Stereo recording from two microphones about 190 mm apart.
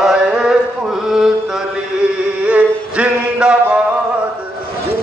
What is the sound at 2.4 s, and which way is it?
Chant, 5° right (ahead or behind).